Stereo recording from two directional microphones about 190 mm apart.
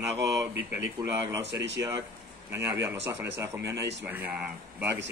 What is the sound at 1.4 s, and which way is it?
Speech, 65° right (ahead or behind).